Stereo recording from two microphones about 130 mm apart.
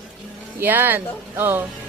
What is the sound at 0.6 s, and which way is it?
Speech, 15° right (ahead or behind).